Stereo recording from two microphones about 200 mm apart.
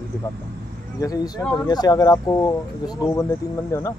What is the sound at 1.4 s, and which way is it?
Speech, 10° left (ahead or behind).